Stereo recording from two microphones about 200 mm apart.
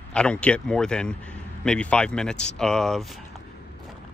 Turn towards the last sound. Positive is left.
turn(degrees=0)  # may be behind; listen again after turning